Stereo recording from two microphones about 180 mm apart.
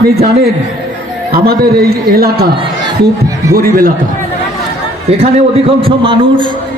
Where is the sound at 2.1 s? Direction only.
60° right (ahead or behind).